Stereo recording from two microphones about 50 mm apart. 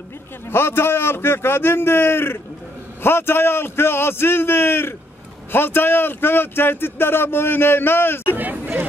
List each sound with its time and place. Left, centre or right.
0.5 s speech: left
8.4 s hubbub: right